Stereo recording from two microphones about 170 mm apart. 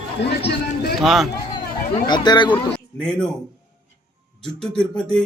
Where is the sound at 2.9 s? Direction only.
5° left (ahead or behind).